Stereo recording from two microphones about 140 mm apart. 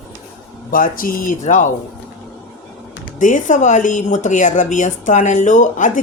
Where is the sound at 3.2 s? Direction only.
65° left (ahead or behind).